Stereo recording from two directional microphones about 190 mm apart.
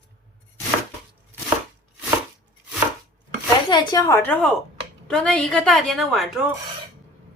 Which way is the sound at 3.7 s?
20° left (ahead or behind).